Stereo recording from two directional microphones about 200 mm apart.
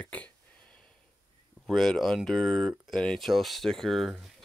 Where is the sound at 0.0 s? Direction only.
5° left (ahead or behind).